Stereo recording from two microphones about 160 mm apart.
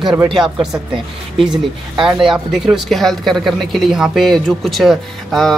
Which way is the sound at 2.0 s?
5° right (ahead or behind).